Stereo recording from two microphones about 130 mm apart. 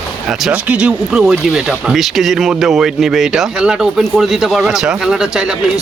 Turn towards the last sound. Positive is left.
turn(degrees=-5)  # may be behind; listen again after turning